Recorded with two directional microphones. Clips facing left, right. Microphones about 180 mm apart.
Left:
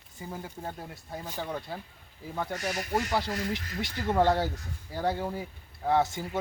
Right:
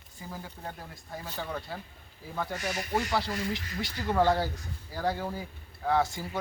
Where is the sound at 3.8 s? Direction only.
20° left (ahead or behind).